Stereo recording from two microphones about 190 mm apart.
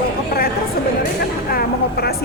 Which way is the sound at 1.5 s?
55° left (ahead or behind).